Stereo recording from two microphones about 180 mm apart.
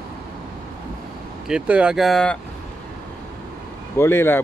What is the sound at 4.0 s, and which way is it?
Speech, 15° left (ahead or behind).